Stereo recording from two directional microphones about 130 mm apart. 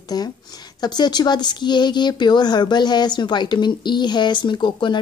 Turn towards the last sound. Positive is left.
turn(degrees=35)  # may be behind; listen again after turning